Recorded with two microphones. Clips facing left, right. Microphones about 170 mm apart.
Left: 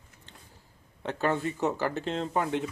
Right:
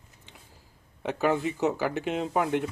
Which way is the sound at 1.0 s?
15° right (ahead or behind).